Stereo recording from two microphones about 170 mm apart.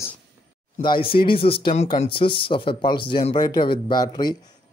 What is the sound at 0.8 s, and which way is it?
Speech, 30° left (ahead or behind).